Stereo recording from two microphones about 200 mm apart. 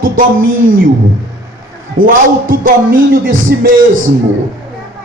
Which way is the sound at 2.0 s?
45° right (ahead or behind).